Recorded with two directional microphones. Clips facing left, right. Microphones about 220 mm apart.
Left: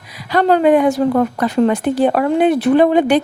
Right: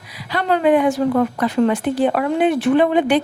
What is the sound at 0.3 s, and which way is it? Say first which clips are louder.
A woman's voice: left 4 dB; 40° left (ahead or behind).